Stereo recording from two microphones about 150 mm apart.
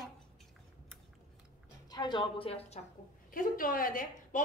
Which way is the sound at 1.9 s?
30° left (ahead or behind).